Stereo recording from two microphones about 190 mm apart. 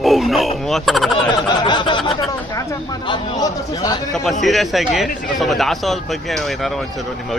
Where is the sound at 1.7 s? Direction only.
25° left (ahead or behind).